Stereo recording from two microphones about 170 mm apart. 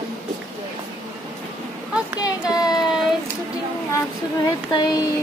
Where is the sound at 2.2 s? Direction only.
20° left (ahead or behind).